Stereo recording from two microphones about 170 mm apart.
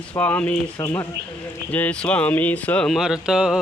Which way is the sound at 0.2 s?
10° left (ahead or behind).